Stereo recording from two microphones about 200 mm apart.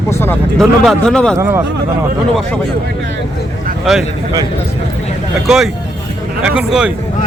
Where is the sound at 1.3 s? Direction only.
10° right (ahead or behind).